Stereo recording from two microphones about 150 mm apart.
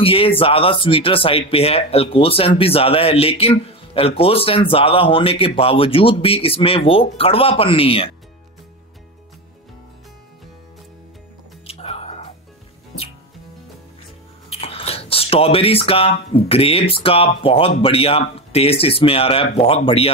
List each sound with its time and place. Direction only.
0.0 s speech: 40° left (ahead or behind)
11.6 s music: 40° left (ahead or behind)
14.5 s speech: 40° left (ahead or behind)